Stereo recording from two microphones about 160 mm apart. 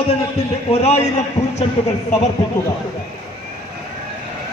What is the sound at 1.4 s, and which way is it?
Speech, 15° left (ahead or behind).